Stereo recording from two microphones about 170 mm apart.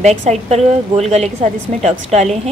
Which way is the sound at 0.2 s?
40° right (ahead or behind).